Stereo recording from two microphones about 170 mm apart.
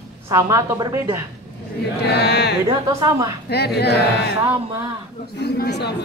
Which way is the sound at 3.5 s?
70° left (ahead or behind).